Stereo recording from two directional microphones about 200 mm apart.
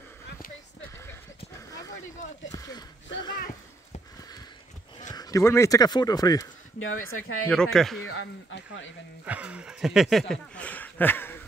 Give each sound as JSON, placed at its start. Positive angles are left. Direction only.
{"t": 2.5, "sound": "speech", "side_deg": 15}
{"t": 5.1, "sound": "speech", "side_deg": 20}
{"t": 6.8, "sound": "speech", "side_deg": 90}
{"t": 7.4, "sound": "speech", "side_deg": 5}
{"t": 8.0, "sound": "speech", "side_deg": 65}
{"t": 9.2, "sound": "speech", "side_deg": -5}